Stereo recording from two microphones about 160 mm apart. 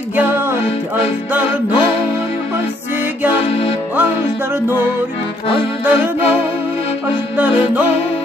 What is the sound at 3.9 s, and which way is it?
Music, 10° right (ahead or behind).